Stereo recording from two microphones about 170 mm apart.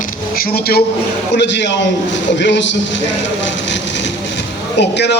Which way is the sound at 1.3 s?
90° left.